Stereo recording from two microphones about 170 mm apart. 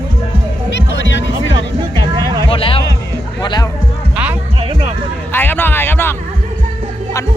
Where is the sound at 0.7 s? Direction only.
90° left.